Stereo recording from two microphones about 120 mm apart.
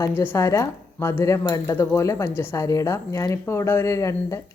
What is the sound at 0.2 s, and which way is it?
Speech, 20° left (ahead or behind).